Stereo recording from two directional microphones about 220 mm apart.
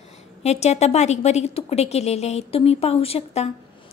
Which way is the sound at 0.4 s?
30° left (ahead or behind).